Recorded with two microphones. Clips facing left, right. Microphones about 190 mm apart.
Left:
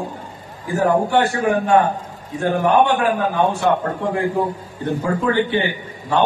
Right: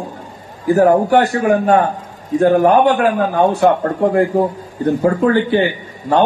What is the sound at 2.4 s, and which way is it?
A man's voice, 40° right (ahead or behind).